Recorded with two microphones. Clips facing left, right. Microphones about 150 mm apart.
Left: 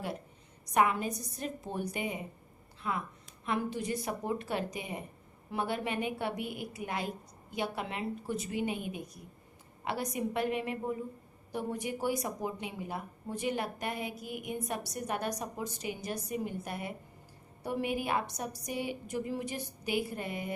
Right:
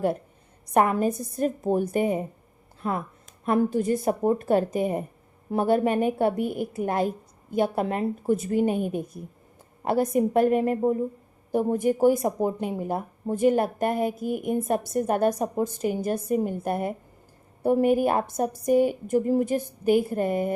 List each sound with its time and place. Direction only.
0.7 s speech: 50° right (ahead or behind)